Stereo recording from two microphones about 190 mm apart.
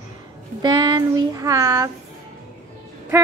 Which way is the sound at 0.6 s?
20° right (ahead or behind).